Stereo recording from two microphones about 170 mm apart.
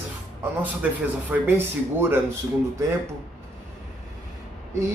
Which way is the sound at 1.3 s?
10° right (ahead or behind).